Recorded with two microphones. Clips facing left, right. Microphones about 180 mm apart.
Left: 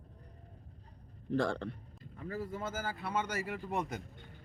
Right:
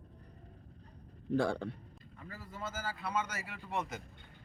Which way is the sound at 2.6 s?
50° left (ahead or behind).